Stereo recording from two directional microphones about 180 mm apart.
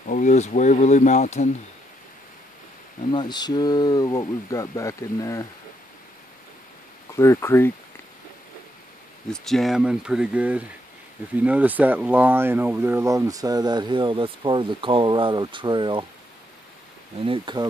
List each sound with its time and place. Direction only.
0.0 s speech: 45° left (ahead or behind)
3.1 s speech: 25° left (ahead or behind)
7.1 s speech: 15° left (ahead or behind)
9.3 s speech: centre (ahead or behind); by 16.1 s 25° right (ahead or behind)
17.2 s speech: 30° right (ahead or behind)